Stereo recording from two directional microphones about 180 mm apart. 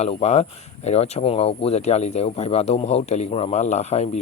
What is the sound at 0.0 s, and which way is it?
Speech, 35° left (ahead or behind).